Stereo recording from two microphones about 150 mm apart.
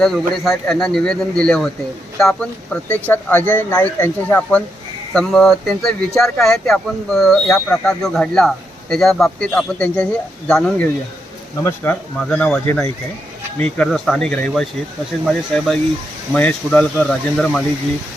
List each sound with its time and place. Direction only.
0.0 s a man's voice: centre (ahead or behind)
7.4 s speech: 15° left (ahead or behind)
7.9 s a man's voice: 5° left (ahead or behind)